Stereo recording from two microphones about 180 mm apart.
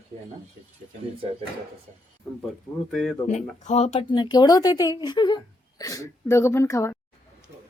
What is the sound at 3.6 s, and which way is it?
Speech, 40° left (ahead or behind).